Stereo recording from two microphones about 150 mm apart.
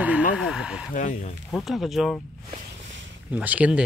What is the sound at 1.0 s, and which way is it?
Speech, 55° left (ahead or behind).